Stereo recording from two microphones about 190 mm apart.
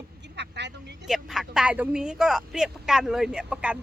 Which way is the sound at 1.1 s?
Centre (ahead or behind).